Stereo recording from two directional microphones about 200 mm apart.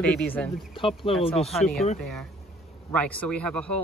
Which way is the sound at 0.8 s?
25° left (ahead or behind).